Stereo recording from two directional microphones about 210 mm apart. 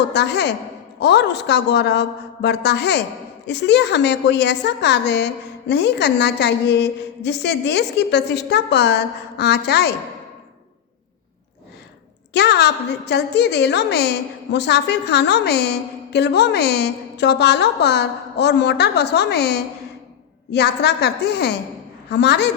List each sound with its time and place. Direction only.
0.1 s a woman's voice: 55° left (ahead or behind)
12.3 s a woman's voice: 50° left (ahead or behind)